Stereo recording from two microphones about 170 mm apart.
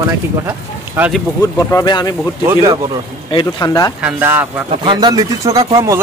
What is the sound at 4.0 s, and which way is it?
Speech, 10° right (ahead or behind).